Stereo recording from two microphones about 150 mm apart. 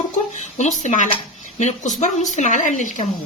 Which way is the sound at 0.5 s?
55° left (ahead or behind).